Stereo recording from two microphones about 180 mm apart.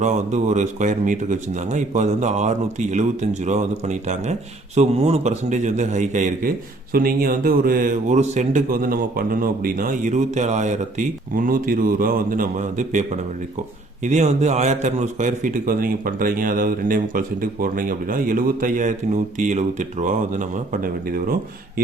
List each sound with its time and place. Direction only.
0.0 s speech: 40° right (ahead or behind)
6.9 s a man's voice: 55° right (ahead or behind)